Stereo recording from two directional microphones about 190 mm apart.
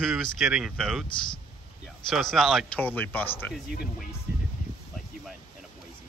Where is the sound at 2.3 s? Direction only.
Centre (ahead or behind).